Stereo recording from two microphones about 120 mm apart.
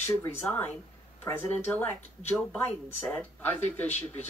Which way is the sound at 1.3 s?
15° left (ahead or behind).